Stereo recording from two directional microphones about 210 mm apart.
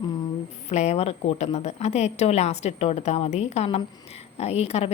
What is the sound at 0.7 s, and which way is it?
A woman's voice, 30° left (ahead or behind).